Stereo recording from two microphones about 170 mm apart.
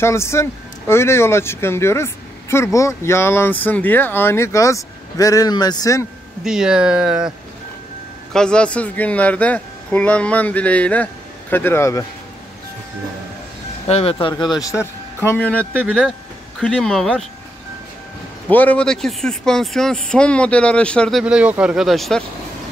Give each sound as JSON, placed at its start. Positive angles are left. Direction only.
{"t": 0.0, "sound": "speech", "side_deg": 15}
{"t": 6.4, "sound": "a man's voice", "side_deg": -5}
{"t": 13.8, "sound": "speech", "side_deg": 40}
{"t": 14.2, "sound": "speech", "side_deg": 25}
{"t": 15.2, "sound": "a man's voice", "side_deg": 10}
{"t": 18.5, "sound": "a man's voice", "side_deg": 10}